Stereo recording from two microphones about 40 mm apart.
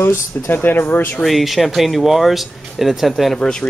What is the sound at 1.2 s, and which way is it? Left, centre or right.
Speech, centre.